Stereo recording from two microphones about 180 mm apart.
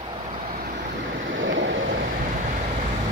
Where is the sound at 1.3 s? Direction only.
90° right.